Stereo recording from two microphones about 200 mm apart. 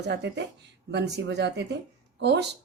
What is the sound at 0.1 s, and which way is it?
Speech, 60° right (ahead or behind).